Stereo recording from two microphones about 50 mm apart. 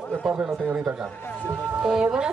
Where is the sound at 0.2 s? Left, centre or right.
Centre.